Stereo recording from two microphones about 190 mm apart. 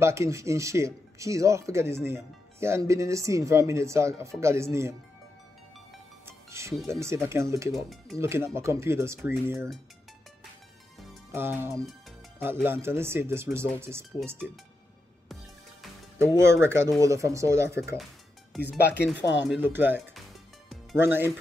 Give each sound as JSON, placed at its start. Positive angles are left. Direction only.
{"t": 0.0, "sound": "speech", "side_deg": -15}
{"t": 6.2, "sound": "music", "side_deg": -15}
{"t": 6.9, "sound": "speech", "side_deg": -15}
{"t": 7.7, "sound": "speech", "side_deg": 0}
{"t": 8.2, "sound": "speech", "side_deg": -15}
{"t": 11.3, "sound": "speech", "side_deg": -10}
{"t": 16.2, "sound": "speech", "side_deg": -15}
{"t": 18.5, "sound": "speech", "side_deg": 0}
{"t": 19.1, "sound": "speech", "side_deg": 70}
{"t": 19.4, "sound": "speech", "side_deg": -10}
{"t": 21.0, "sound": "speech", "side_deg": -10}